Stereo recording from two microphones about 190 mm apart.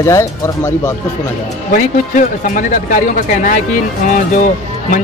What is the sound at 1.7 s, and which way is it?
A man's voice, 45° left (ahead or behind).